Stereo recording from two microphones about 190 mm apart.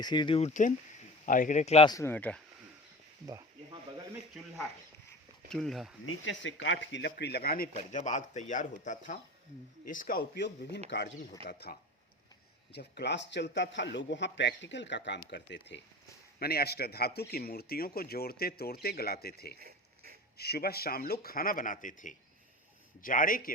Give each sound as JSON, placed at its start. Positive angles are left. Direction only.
{"t": 0.0, "sound": "speech", "side_deg": 25}
{"t": 1.9, "sound": "speech", "side_deg": 15}
{"t": 3.2, "sound": "a sound", "side_deg": -20}
{"t": 5.5, "sound": "speech", "side_deg": 0}
{"t": 6.1, "sound": "a man's voice", "side_deg": 85}
{"t": 7.8, "sound": "a man's voice", "side_deg": 40}
{"t": 11.4, "sound": "a man's voice", "side_deg": 55}
{"t": 16.4, "sound": "speech", "side_deg": 55}
{"t": 19.5, "sound": "a sound", "side_deg": -50}
{"t": 20.4, "sound": "speech", "side_deg": 55}